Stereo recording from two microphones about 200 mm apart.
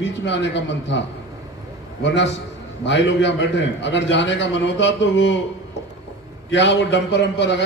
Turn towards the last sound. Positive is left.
turn(degrees=60)  # may be behind; listen again after turning